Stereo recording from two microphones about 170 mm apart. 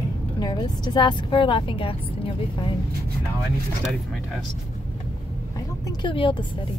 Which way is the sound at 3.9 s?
Centre (ahead or behind).